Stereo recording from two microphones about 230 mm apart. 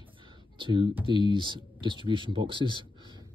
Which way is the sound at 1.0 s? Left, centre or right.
Right.